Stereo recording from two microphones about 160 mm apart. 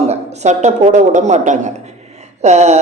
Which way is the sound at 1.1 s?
50° right (ahead or behind).